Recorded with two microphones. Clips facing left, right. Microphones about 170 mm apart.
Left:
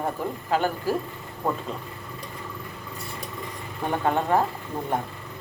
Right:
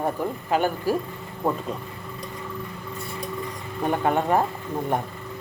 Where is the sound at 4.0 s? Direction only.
15° right (ahead or behind).